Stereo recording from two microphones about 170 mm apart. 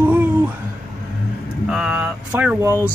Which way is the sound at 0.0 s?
10° right (ahead or behind).